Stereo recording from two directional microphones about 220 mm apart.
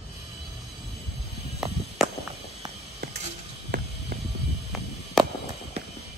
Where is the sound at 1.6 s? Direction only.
5° right (ahead or behind).